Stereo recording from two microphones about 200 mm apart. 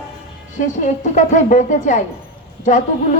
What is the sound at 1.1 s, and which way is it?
Speech, 40° left (ahead or behind).